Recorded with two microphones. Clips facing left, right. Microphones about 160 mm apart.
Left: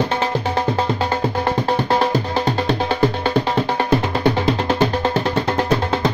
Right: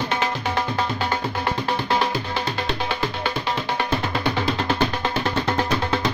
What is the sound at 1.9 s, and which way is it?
Music, 40° left (ahead or behind).